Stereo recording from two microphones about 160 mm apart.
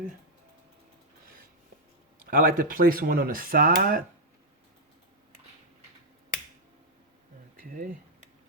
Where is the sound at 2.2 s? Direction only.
65° right (ahead or behind).